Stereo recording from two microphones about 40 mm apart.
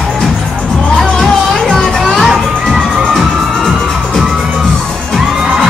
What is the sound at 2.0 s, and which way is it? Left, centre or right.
Music, centre.